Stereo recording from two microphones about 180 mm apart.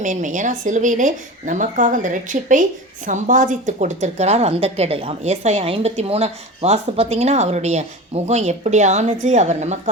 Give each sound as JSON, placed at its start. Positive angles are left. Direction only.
{"t": 0.0, "sound": "a woman's voice", "side_deg": -45}